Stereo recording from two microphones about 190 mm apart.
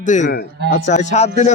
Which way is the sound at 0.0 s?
40° left (ahead or behind).